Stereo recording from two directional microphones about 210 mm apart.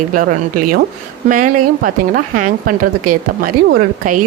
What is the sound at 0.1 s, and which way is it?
Speech, 40° right (ahead or behind).